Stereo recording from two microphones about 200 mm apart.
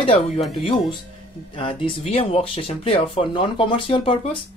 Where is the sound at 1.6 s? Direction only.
25° left (ahead or behind).